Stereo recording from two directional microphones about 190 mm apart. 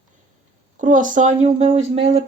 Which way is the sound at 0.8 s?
45° right (ahead or behind).